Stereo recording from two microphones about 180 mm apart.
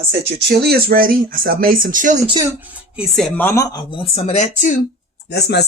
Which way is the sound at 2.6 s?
Centre (ahead or behind).